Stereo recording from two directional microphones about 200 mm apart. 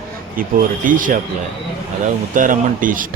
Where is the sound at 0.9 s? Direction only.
40° right (ahead or behind).